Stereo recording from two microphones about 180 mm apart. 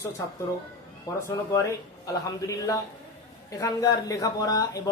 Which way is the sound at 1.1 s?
20° left (ahead or behind).